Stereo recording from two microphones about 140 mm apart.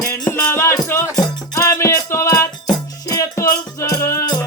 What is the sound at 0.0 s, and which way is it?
Music, 20° left (ahead or behind).